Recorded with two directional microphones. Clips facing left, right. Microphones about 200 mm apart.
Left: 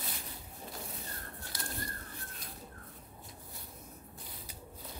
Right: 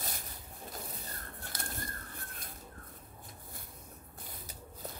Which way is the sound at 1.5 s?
50° right (ahead or behind).